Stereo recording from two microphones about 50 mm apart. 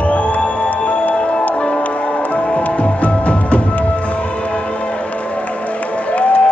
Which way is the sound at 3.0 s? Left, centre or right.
Left.